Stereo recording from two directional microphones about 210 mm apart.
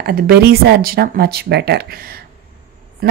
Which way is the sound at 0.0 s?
45° right (ahead or behind).